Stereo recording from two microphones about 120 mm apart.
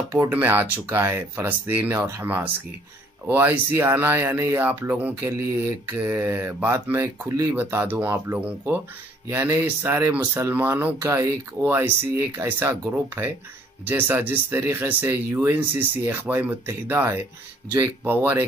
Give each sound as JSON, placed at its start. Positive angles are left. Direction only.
{"t": 0.1, "sound": "speech", "side_deg": -15}